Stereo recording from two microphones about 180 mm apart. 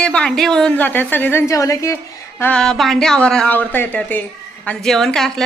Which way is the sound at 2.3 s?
5° left (ahead or behind).